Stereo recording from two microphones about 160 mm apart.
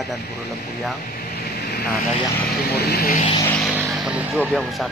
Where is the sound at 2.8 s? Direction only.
75° left (ahead or behind).